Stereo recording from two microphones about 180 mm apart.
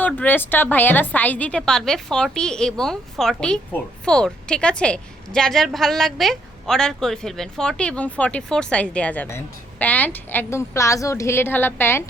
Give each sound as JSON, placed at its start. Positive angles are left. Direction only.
{"t": 0.0, "sound": "a woman's voice", "side_deg": 10}